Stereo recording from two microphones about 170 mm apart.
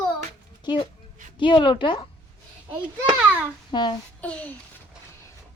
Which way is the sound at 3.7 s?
25° left (ahead or behind).